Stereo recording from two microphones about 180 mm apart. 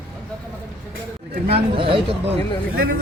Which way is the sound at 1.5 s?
30° right (ahead or behind).